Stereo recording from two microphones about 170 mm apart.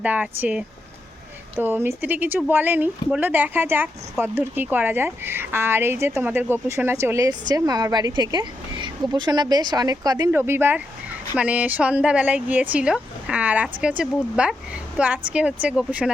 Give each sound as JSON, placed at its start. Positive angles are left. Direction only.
{"t": 0.0, "sound": "speech", "side_deg": -10}